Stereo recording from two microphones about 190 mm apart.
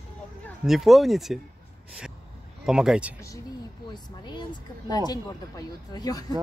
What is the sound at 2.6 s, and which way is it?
Speech, 5° right (ahead or behind).